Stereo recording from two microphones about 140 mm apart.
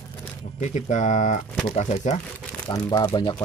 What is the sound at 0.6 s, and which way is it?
Speech, 60° left (ahead or behind).